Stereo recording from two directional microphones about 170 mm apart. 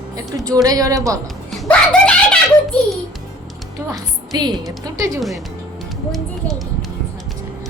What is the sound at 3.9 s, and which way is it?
A woman's voice, 20° right (ahead or behind).